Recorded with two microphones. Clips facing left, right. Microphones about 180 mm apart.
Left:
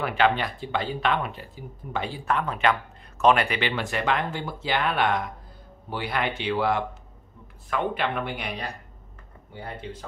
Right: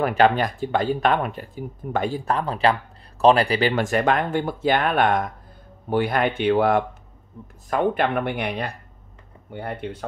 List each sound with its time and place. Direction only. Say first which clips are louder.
0.0 s speech: right 5 dB; 45° right (ahead or behind); by 10.0 s 60° right (ahead or behind)